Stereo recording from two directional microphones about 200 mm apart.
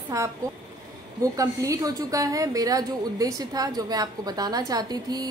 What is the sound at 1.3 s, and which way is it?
A woman's voice, 15° right (ahead or behind).